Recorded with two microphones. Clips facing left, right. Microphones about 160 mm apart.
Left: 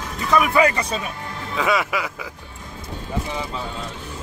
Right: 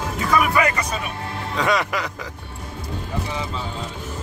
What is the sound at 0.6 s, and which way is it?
Speech, 30° left (ahead or behind).